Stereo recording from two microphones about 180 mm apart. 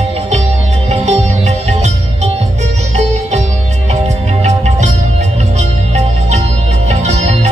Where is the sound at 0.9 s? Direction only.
40° right (ahead or behind).